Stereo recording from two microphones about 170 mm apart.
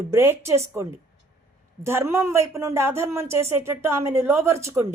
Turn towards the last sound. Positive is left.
turn(degrees=-15)  # may be behind; listen again after turning